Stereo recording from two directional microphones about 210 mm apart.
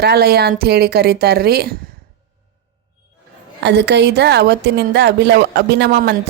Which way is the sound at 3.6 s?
55° right (ahead or behind).